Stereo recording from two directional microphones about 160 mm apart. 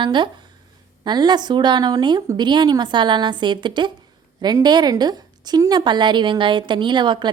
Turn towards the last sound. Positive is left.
turn(degrees=-30)  # may be behind; listen again after turning